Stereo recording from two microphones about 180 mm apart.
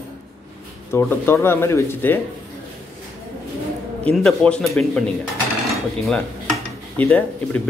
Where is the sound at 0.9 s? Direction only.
15° left (ahead or behind).